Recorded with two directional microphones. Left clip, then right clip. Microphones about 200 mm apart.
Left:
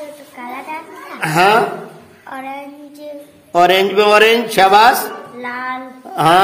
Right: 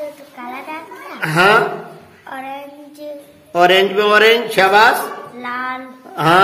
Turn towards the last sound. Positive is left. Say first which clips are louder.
# left 1 dB
turn(degrees=30)  # may be behind; listen again after turning